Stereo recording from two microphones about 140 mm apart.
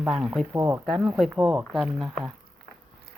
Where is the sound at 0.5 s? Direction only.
15° right (ahead or behind).